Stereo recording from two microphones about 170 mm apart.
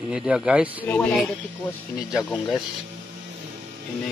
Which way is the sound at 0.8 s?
10° left (ahead or behind).